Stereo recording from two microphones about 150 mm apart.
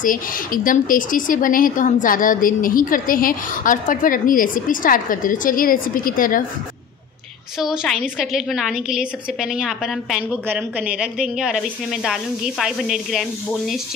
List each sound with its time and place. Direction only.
0.0 s speech: 65° left (ahead or behind)
7.5 s a woman's voice: 5° right (ahead or behind)